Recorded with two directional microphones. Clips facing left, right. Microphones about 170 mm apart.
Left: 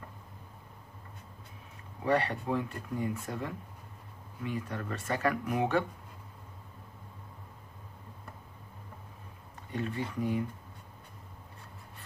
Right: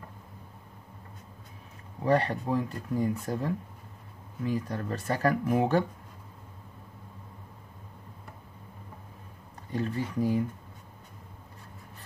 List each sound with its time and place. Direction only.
2.0 s speech: 35° right (ahead or behind)
9.7 s speech: 35° right (ahead or behind)